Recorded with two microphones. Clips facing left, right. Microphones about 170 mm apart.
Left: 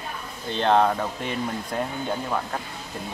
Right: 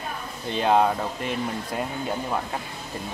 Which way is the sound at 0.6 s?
5° right (ahead or behind).